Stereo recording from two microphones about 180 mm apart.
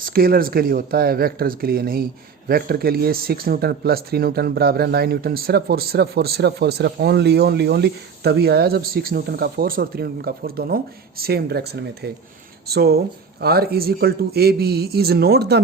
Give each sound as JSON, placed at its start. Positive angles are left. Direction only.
{"t": 0.0, "sound": "speech", "side_deg": -55}